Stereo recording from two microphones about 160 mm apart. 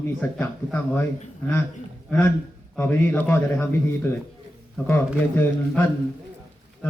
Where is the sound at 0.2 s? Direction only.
10° left (ahead or behind).